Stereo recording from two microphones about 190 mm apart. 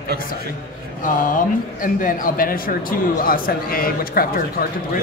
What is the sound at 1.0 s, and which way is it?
A man's voice, 45° left (ahead or behind).